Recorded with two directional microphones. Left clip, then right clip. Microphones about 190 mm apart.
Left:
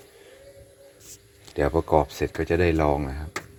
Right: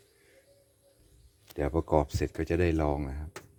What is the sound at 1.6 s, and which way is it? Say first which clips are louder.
Speech: left 8 dB; 10° right (ahead or behind).